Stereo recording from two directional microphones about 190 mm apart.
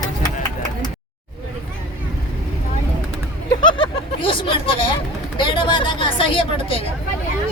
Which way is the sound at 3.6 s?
25° left (ahead or behind).